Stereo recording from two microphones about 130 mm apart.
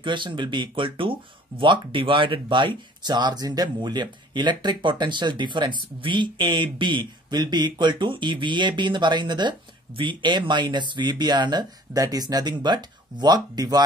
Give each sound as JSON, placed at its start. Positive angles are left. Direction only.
{"t": 0.0, "sound": "speech", "side_deg": -40}